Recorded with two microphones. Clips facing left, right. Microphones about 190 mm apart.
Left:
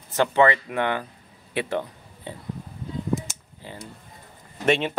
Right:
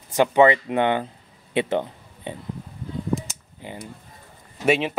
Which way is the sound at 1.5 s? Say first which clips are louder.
Right 4 dB; 20° right (ahead or behind).